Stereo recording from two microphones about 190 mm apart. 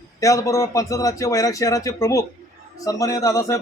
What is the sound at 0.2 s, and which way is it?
A man's voice, 15° left (ahead or behind).